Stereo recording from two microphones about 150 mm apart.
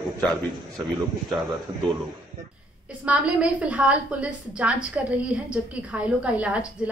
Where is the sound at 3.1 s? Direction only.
10° right (ahead or behind).